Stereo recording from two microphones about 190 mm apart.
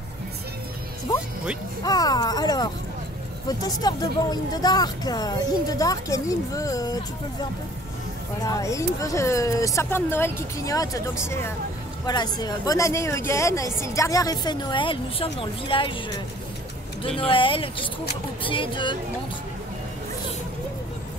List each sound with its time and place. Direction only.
1.1 s speech: 20° left (ahead or behind)
8.5 s speech: 15° left (ahead or behind)
17.3 s speech: 25° left (ahead or behind)